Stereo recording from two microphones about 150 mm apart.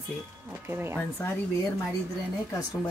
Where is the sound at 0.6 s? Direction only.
15° right (ahead or behind).